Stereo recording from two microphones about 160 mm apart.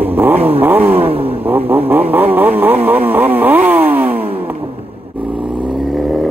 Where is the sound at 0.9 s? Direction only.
35° right (ahead or behind).